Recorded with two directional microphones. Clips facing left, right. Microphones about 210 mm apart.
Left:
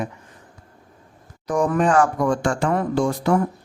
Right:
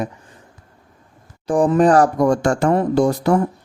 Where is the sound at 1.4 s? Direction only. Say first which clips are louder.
Right 5 dB; 30° right (ahead or behind).